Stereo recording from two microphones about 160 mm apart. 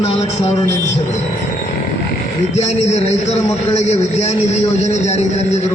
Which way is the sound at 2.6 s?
45° left (ahead or behind).